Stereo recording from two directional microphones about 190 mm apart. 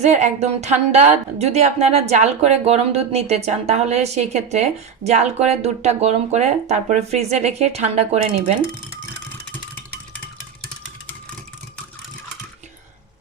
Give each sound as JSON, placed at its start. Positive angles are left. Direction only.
{"t": 0.0, "sound": "speech", "side_deg": -35}